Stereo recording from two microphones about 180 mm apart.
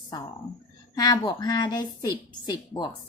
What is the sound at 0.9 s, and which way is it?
A woman's voice, 20° left (ahead or behind).